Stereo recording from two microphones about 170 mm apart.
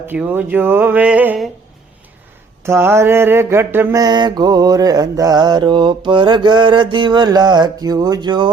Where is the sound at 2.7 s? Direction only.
15° right (ahead or behind).